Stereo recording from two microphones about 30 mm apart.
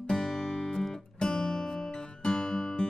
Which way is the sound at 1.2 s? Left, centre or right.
Left.